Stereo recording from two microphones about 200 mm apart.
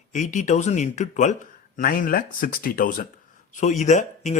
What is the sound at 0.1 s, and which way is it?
Speech, 40° left (ahead or behind).